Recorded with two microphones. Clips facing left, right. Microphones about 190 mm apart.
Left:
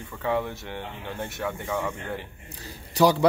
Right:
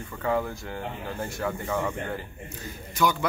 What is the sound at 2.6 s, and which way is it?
Speech, 35° left (ahead or behind).